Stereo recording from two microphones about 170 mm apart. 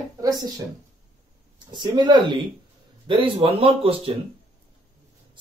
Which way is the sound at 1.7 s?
25° right (ahead or behind).